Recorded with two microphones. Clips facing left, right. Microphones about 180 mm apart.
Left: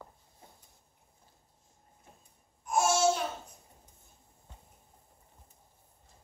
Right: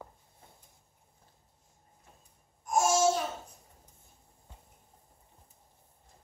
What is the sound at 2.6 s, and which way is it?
Babbling, 40° right (ahead or behind).